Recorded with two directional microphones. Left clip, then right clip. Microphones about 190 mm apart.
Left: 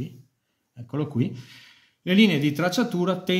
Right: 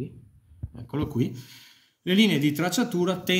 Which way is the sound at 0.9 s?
35° left (ahead or behind).